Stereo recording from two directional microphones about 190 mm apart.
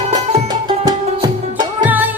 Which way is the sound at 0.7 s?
20° right (ahead or behind).